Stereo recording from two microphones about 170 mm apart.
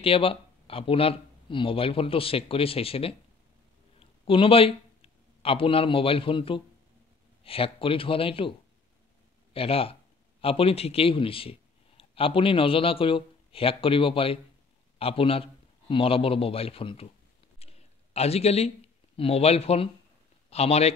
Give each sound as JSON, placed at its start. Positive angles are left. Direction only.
{"t": 0.0, "sound": "speech", "side_deg": 35}
{"t": 4.3, "sound": "a man's voice", "side_deg": 35}
{"t": 17.6, "sound": "a sound", "side_deg": 35}
{"t": 19.1, "sound": "speech", "side_deg": 35}